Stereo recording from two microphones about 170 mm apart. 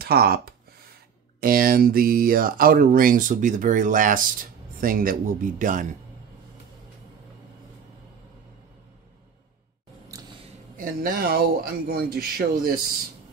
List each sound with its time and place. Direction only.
0.0 s speech: 65° right (ahead or behind)
10.8 s speech: 55° right (ahead or behind)